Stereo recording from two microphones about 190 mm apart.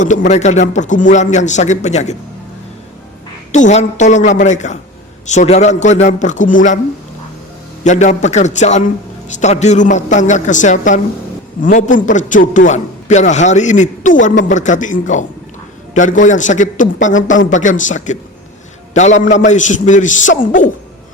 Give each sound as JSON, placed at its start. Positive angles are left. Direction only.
{"t": 0.0, "sound": "a man's voice", "side_deg": 40}
{"t": 3.5, "sound": "a man's voice", "side_deg": 35}
{"t": 7.9, "sound": "a man's voice", "side_deg": 40}